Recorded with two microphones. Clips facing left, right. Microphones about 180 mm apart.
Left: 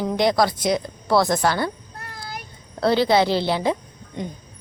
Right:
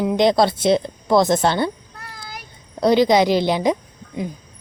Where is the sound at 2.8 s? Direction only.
15° right (ahead or behind).